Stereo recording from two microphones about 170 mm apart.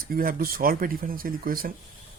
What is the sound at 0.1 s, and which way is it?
Speech, 60° right (ahead or behind).